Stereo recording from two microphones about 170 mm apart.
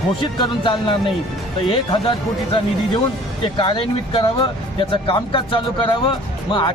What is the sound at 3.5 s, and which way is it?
Speech, 25° left (ahead or behind).